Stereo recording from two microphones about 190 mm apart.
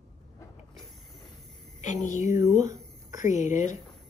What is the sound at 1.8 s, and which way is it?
Speech, 40° left (ahead or behind).